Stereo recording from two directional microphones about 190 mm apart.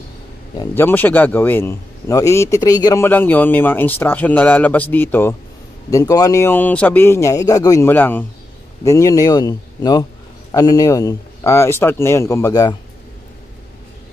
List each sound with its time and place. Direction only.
0.6 s a man's voice: 10° left (ahead or behind)